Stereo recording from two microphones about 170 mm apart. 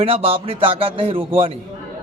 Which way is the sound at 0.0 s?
35° right (ahead or behind).